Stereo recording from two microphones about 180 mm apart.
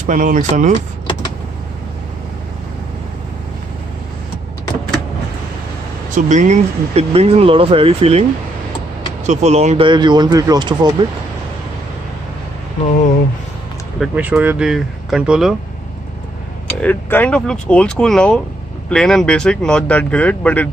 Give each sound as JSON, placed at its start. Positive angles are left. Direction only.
{"t": 0.0, "sound": "speech", "side_deg": -45}
{"t": 6.1, "sound": "speech", "side_deg": -45}
{"t": 13.9, "sound": "speech", "side_deg": -5}
{"t": 16.6, "sound": "speech", "side_deg": 10}